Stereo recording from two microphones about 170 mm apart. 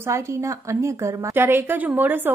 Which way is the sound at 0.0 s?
15° right (ahead or behind).